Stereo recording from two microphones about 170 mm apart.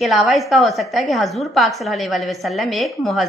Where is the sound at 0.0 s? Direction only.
Centre (ahead or behind).